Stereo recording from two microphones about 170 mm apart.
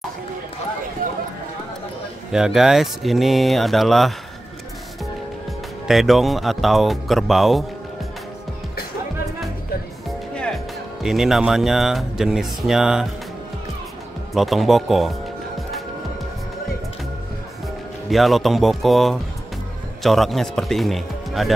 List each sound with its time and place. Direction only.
1.0 s a sound: 55° right (ahead or behind)
2.3 s speech: 5° right (ahead or behind)
5.9 s speech: centre (ahead or behind)
10.3 s speech: 5° left (ahead or behind)
14.3 s speech: centre (ahead or behind)
18.1 s speech: centre (ahead or behind)